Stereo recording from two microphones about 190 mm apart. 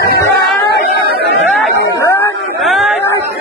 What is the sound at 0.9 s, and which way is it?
Chatter, 60° right (ahead or behind).